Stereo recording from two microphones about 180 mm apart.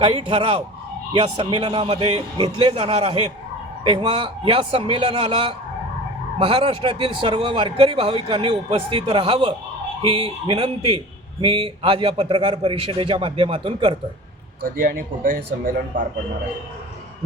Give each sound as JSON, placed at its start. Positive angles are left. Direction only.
{"t": 0.0, "sound": "speech", "side_deg": -30}
{"t": 14.6, "sound": "speech", "side_deg": -50}